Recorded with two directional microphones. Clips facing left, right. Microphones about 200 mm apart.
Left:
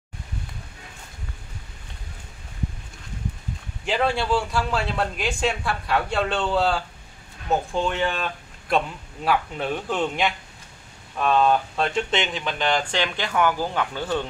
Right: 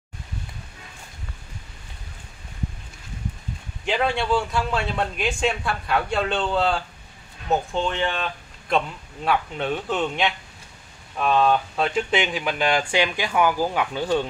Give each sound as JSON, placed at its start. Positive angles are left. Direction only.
{"t": 3.8, "sound": "a man's voice", "side_deg": 0}